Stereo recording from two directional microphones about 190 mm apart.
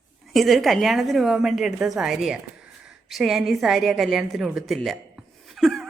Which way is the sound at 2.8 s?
Centre (ahead or behind).